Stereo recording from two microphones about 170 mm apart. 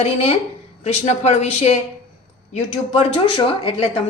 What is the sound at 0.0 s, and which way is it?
A woman's voice, 35° left (ahead or behind).